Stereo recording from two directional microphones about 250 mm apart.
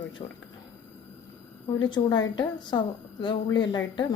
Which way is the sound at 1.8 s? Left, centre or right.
Centre.